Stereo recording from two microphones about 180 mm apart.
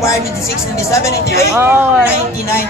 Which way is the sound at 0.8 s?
15° left (ahead or behind).